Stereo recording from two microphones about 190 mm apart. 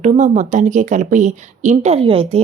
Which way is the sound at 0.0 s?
40° right (ahead or behind).